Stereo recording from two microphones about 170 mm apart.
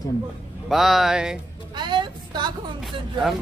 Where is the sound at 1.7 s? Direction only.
25° right (ahead or behind).